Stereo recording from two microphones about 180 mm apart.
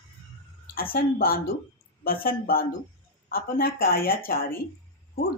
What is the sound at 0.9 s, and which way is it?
A woman's voice, 55° left (ahead or behind).